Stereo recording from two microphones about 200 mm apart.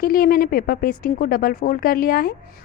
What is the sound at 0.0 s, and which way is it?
A woman's voice, 45° left (ahead or behind).